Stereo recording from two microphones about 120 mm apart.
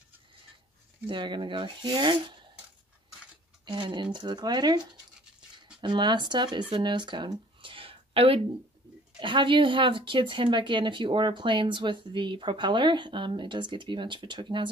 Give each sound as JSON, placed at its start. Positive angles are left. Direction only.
{"t": 1.0, "sound": "speech", "side_deg": -40}
{"t": 3.6, "sound": "speech", "side_deg": -40}
{"t": 6.7, "sound": "a sound", "side_deg": -40}
{"t": 9.2, "sound": "speech", "side_deg": -45}